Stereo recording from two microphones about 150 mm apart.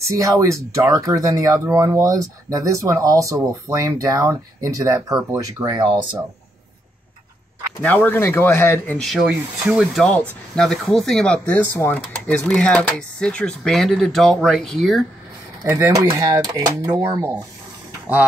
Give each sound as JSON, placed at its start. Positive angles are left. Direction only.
{"t": 0.0, "sound": "speech", "side_deg": -20}
{"t": 7.8, "sound": "speech", "side_deg": 15}
{"t": 9.0, "sound": "speech", "side_deg": -5}
{"t": 15.6, "sound": "speech", "side_deg": -20}